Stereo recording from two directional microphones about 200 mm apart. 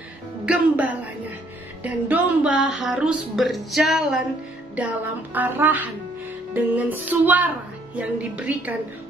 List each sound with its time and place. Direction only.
0.5 s speech: 5° right (ahead or behind)
2.5 s a sound: 65° left (ahead or behind)
2.8 s speech: 5° right (ahead or behind)